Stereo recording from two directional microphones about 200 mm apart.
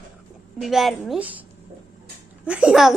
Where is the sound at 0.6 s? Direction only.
Centre (ahead or behind).